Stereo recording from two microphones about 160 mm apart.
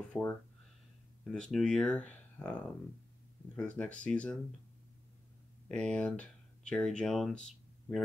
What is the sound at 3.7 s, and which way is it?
Speech, 10° left (ahead or behind).